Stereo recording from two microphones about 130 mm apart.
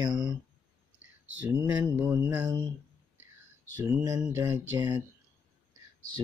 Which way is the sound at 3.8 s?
25° right (ahead or behind).